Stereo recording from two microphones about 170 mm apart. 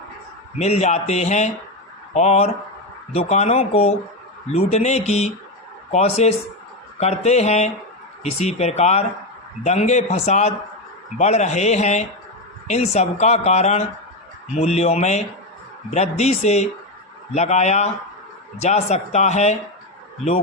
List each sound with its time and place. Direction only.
0.6 s speech: 40° left (ahead or behind)